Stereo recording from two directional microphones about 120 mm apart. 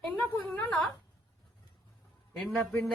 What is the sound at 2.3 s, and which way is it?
Speech, 5° left (ahead or behind).